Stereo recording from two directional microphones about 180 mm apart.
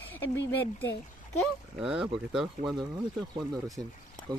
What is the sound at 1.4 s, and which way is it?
Speech, 5° right (ahead or behind).